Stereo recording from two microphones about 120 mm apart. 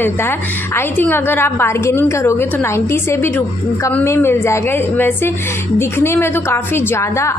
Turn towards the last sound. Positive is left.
turn(degrees=25)  # may be behind; listen again after turning